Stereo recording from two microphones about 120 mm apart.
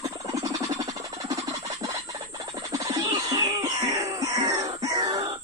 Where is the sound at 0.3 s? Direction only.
30° right (ahead or behind).